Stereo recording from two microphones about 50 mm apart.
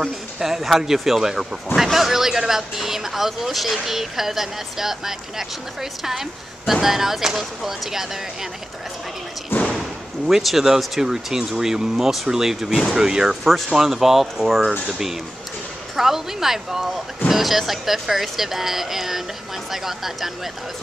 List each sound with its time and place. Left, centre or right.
0.4 s speech: centre
9.5 s slam: left
10.2 s speech: centre